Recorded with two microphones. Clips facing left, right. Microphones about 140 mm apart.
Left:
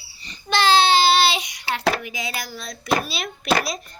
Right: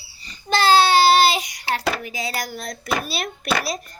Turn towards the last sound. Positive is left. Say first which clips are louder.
# left 2 dB
turn(degrees=-40)  # may be behind; listen again after turning